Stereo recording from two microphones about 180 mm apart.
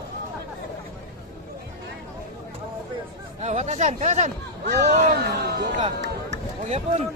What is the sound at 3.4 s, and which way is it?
Speech, 40° right (ahead or behind).